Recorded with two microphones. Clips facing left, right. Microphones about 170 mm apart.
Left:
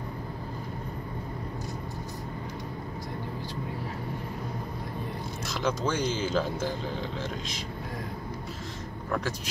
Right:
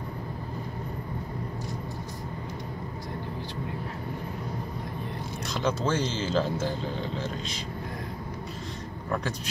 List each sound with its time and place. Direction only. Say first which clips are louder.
5.5 s speech: right 2 dB; 10° left (ahead or behind)